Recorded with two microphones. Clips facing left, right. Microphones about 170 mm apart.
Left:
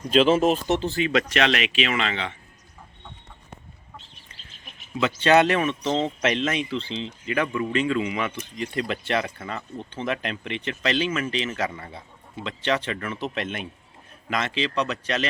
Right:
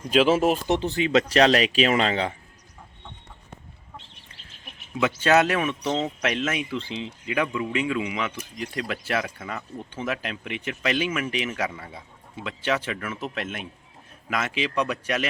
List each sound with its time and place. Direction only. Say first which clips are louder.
0.1 s speech: left 1 dB; 10° right (ahead or behind)
1.3 s speech: right 4 dB; 35° right (ahead or behind)
4.9 s speech: left 1 dB; 5° right (ahead or behind)